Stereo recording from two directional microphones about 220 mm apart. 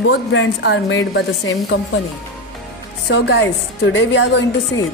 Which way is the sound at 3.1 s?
50° left (ahead or behind).